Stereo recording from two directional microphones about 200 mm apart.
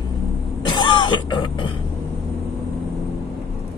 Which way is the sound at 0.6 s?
20° left (ahead or behind).